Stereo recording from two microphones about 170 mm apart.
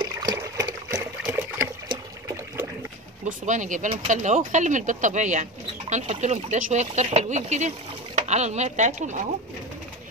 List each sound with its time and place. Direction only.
0.0 s a sound: 25° right (ahead or behind)
1.3 s water: 15° right (ahead or behind)
3.3 s speech: 45° right (ahead or behind)